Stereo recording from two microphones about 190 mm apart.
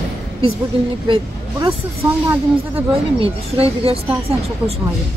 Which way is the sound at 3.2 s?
30° right (ahead or behind).